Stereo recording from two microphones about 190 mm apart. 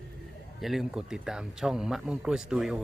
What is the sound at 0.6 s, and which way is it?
A man's voice, centre (ahead or behind).